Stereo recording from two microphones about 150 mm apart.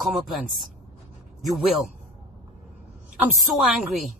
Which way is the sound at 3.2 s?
Centre (ahead or behind).